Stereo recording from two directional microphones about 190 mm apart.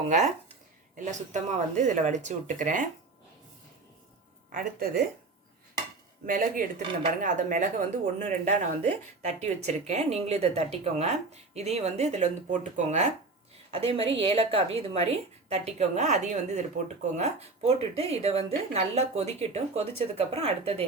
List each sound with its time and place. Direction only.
0.9 s a woman's voice: 40° right (ahead or behind)
4.5 s speech: 50° right (ahead or behind)
6.2 s a woman's voice: 45° right (ahead or behind)